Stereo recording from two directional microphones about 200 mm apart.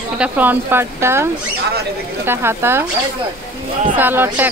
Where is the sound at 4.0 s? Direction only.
10° right (ahead or behind).